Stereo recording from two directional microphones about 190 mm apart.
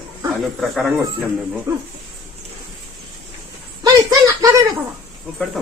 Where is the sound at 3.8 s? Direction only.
20° right (ahead or behind).